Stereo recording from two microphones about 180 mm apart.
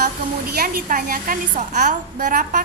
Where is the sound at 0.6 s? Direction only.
50° right (ahead or behind).